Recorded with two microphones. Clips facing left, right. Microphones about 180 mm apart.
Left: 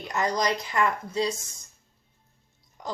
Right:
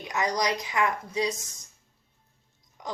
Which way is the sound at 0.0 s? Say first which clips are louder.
Left 1 dB; 15° right (ahead or behind).